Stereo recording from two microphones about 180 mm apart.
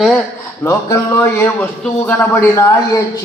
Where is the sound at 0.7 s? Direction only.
15° left (ahead or behind).